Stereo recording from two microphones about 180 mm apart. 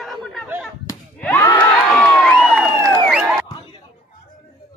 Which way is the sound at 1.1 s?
5° left (ahead or behind).